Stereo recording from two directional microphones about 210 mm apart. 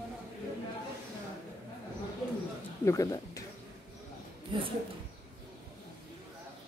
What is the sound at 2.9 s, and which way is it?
Speech, 15° left (ahead or behind).